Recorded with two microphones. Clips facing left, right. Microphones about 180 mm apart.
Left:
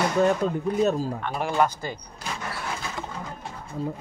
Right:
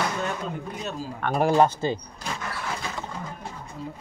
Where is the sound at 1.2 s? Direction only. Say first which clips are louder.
Right 4 dB; 50° right (ahead or behind).